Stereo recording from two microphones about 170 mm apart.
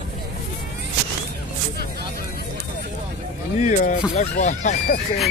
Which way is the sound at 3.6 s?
50° left (ahead or behind).